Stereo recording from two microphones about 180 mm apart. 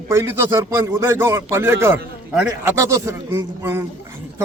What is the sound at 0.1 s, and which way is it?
Speech, 15° right (ahead or behind).